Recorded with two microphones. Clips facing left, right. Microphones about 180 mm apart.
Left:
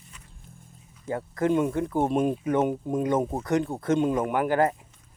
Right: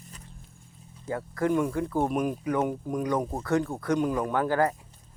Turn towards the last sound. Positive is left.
turn(degrees=20)  # may be behind; listen again after turning